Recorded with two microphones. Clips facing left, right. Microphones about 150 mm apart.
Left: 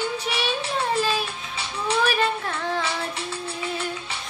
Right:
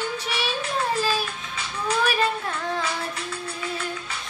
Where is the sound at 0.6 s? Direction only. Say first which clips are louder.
Left 1 dB; 30° left (ahead or behind).